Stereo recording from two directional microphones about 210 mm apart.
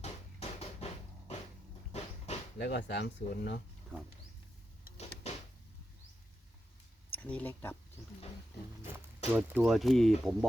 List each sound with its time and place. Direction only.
0.0 s a sound: 30° left (ahead or behind)
1.9 s vehicle: 30° left (ahead or behind)
2.6 s speech: 55° left (ahead or behind)
5.2 s a sound: 30° left (ahead or behind)
7.1 s speech: 5° left (ahead or behind)
9.3 s speech: 10° right (ahead or behind)